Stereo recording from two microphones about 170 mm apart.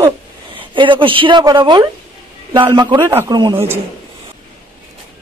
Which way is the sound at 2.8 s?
30° right (ahead or behind).